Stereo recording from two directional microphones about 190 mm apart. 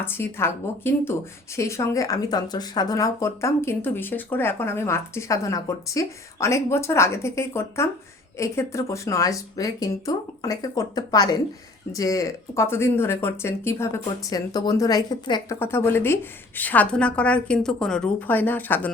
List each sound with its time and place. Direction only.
0.0 s speech: 10° left (ahead or behind)